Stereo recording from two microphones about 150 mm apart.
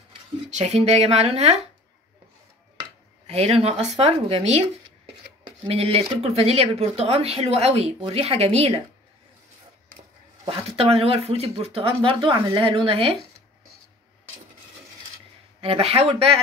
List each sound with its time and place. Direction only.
0.5 s speech: 50° right (ahead or behind)
3.3 s speech: 45° right (ahead or behind)
5.7 s speech: 40° right (ahead or behind)
10.5 s speech: 40° right (ahead or behind)
15.6 s speech: 40° right (ahead or behind)